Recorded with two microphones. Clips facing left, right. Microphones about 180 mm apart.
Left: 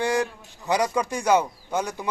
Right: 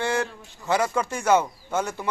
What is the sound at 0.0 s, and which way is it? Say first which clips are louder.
Speech: left 2 dB; 15° left (ahead or behind).